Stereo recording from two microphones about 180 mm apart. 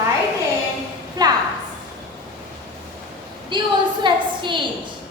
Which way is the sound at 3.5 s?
25° right (ahead or behind).